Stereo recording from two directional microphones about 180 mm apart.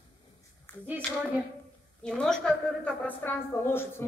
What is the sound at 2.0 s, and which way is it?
A woman's voice, 5° left (ahead or behind).